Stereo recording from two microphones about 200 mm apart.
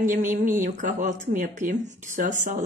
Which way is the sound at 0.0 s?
40° right (ahead or behind).